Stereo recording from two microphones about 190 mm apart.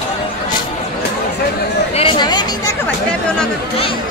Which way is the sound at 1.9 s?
25° left (ahead or behind).